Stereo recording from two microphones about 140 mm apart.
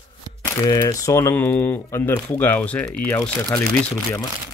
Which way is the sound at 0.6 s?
25° left (ahead or behind).